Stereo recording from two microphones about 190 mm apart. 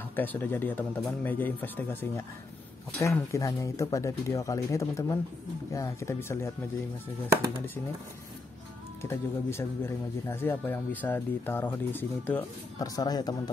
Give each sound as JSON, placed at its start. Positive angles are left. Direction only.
{"t": 0.1, "sound": "speech", "side_deg": 10}
{"t": 9.0, "sound": "speech", "side_deg": 15}